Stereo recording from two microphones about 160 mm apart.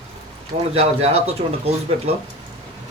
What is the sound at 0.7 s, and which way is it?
Speech, 40° right (ahead or behind).